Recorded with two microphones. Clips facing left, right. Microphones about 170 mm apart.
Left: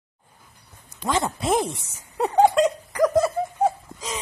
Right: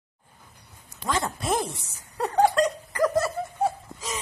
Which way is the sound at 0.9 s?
Centre (ahead or behind).